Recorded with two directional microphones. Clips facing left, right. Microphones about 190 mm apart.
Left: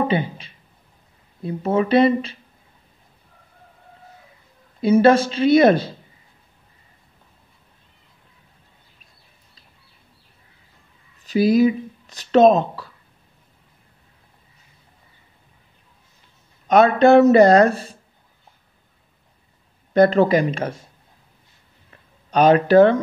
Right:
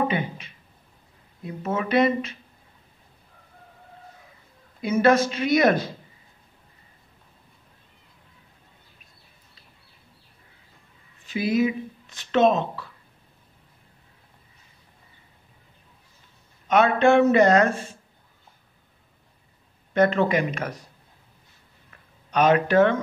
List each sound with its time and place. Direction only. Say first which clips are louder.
0.1 s speech: left 5 dB; 30° left (ahead or behind)
4.8 s a woman's voice: left 5 dB; 30° left (ahead or behind)
11.2 s speech: left 7 dB; 35° left (ahead or behind)
16.6 s speech: left 5 dB; 40° left (ahead or behind)
19.9 s speech: left 6 dB; 35° left (ahead or behind)
21.9 s a sound: left 4 dB; 35° left (ahead or behind)